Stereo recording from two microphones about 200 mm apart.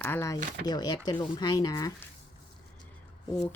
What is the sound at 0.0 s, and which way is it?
Speech, 10° left (ahead or behind).